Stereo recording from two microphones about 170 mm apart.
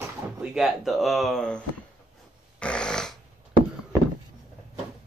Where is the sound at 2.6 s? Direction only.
5° left (ahead or behind).